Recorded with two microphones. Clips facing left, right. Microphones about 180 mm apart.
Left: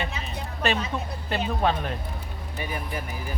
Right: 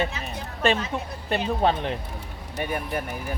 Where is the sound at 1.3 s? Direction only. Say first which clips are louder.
Right 2 dB; 25° right (ahead or behind).